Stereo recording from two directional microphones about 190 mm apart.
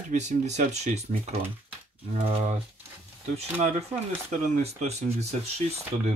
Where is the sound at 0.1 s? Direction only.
40° right (ahead or behind).